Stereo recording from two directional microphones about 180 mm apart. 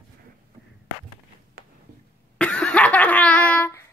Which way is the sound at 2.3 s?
5° left (ahead or behind).